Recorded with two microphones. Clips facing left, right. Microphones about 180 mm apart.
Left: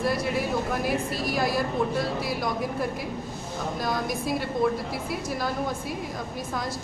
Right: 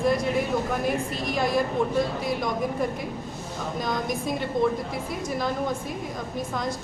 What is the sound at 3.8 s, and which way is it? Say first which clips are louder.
Speech: even; 5° left (ahead or behind).